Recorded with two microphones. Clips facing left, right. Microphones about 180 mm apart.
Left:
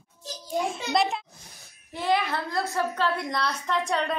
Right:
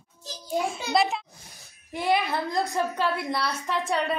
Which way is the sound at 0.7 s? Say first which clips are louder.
Right 1 dB; centre (ahead or behind).